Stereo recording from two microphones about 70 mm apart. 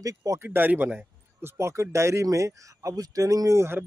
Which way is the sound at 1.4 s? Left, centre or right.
Right.